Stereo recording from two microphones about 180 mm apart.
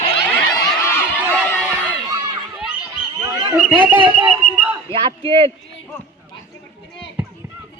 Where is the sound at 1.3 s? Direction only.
10° left (ahead or behind).